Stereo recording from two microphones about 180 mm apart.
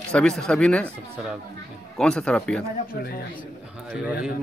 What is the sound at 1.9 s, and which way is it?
Speech, 5° left (ahead or behind).